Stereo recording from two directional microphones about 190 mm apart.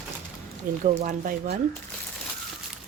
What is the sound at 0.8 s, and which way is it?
Speech, 40° right (ahead or behind).